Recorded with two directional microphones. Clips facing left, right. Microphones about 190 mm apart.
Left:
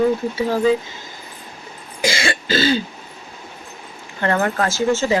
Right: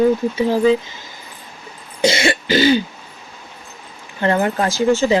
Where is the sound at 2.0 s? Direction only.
25° right (ahead or behind).